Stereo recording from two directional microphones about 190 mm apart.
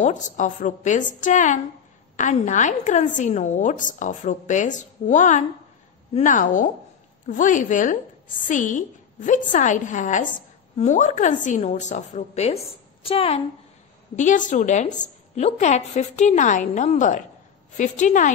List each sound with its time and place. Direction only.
0.0 s a woman's voice: 40° left (ahead or behind)
14.1 s a woman's voice: 40° left (ahead or behind)